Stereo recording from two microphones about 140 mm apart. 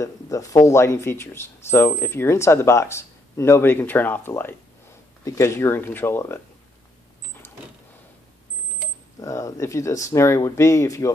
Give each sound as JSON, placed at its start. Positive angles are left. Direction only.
{"t": 0.0, "sound": "speech", "side_deg": 25}
{"t": 9.2, "sound": "speech", "side_deg": 20}